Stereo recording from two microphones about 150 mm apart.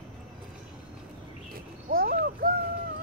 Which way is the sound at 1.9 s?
85° right.